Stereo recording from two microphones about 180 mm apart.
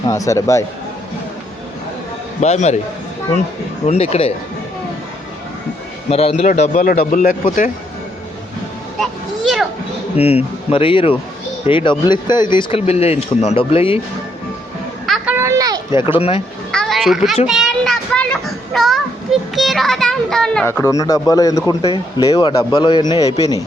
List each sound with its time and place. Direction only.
0.1 s speech: 15° left (ahead or behind)
2.4 s speech: 40° left (ahead or behind)
3.8 s speech: 35° left (ahead or behind)
6.1 s speech: 35° left (ahead or behind)
6.5 s speech: 50° left (ahead or behind)
9.0 s a sound: centre (ahead or behind)
10.2 s speech: 35° left (ahead or behind)
15.0 s a sound: centre (ahead or behind)
15.4 s a sound: 15° right (ahead or behind)
16.0 s speech: 30° left (ahead or behind)
16.7 s a child's voice: centre (ahead or behind); by 21.6 s 20° left (ahead or behind)
21.7 s speech: 30° left (ahead or behind)